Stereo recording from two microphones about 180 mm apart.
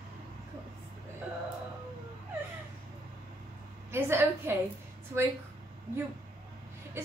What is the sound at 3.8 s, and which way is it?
Speech, 15° right (ahead or behind).